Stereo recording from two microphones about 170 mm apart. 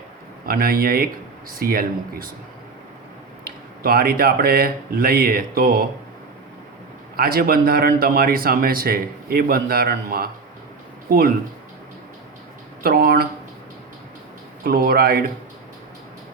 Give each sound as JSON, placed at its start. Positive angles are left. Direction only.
{"t": 0.4, "sound": "a man's voice", "side_deg": -60}
{"t": 3.4, "sound": "a man's voice", "side_deg": -60}
{"t": 7.2, "sound": "a man's voice", "side_deg": -60}
{"t": 12.8, "sound": "speech", "side_deg": -60}
{"t": 14.6, "sound": "a man's voice", "side_deg": -60}